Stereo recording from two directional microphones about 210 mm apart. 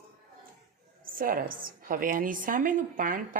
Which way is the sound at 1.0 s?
40° right (ahead or behind).